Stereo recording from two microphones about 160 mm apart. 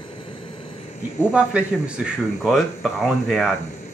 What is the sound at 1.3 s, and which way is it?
Speech, 5° right (ahead or behind).